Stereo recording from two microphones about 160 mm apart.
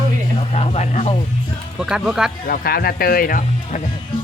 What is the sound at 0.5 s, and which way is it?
Speech, 40° left (ahead or behind).